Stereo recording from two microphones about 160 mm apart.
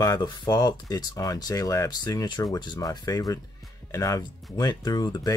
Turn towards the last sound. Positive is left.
turn(degrees=25)  # may be behind; listen again after turning